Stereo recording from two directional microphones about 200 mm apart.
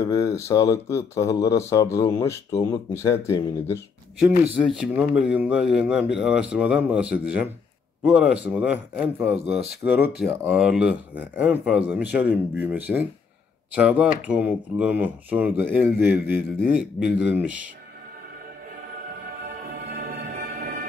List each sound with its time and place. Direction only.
0.0 s speech: 15° left (ahead or behind)
4.2 s speech: 5° right (ahead or behind)
19.9 s music: 45° right (ahead or behind)